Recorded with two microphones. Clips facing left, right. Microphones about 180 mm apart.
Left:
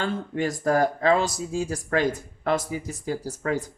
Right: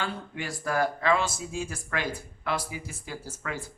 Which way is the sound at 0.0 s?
45° left (ahead or behind).